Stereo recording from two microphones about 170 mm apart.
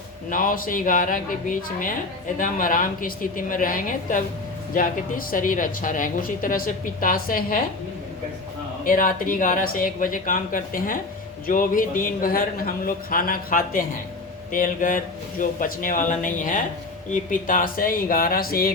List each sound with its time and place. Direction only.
0.3 s a man's voice: 55° left (ahead or behind)
8.8 s a man's voice: 55° left (ahead or behind)